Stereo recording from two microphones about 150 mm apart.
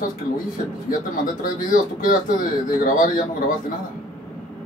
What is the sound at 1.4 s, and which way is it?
Speech, 65° left (ahead or behind).